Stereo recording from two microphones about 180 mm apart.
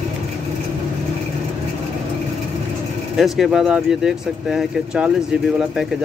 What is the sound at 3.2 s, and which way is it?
Speech, centre (ahead or behind).